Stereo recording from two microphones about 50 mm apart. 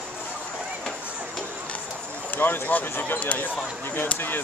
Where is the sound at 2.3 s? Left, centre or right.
Left.